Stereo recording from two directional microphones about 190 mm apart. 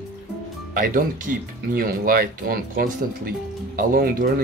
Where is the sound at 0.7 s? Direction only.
45° right (ahead or behind).